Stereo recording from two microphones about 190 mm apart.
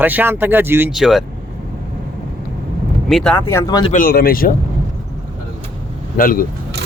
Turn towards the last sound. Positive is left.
turn(degrees=50)  # may be behind; listen again after turning